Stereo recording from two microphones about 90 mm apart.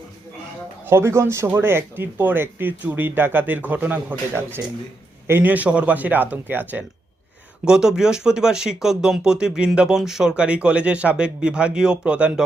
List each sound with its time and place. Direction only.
0.9 s speech: 30° right (ahead or behind)
5.3 s speech: 20° right (ahead or behind)
7.6 s speech: 5° right (ahead or behind)